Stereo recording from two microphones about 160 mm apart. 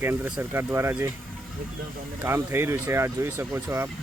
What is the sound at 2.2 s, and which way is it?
Speech, 15° right (ahead or behind).